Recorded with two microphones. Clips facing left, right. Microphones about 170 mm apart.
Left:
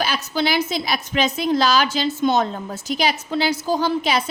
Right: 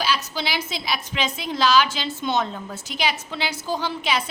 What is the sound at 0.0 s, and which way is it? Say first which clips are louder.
A woman's voice: left 4 dB; 50° left (ahead or behind).